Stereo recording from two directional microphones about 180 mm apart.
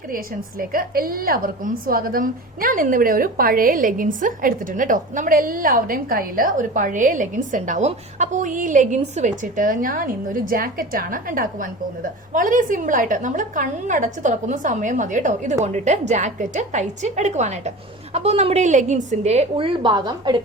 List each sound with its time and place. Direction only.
0.6 s a woman's voice: 55° right (ahead or behind); by 20.3 s 25° right (ahead or behind)